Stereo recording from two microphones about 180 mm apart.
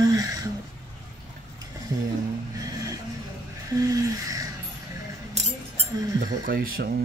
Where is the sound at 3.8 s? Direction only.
20° right (ahead or behind).